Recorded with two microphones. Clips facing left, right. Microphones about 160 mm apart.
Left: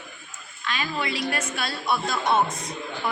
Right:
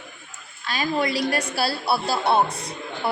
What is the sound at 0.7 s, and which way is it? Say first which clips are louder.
A woman's voice: right 5 dB; 40° right (ahead or behind).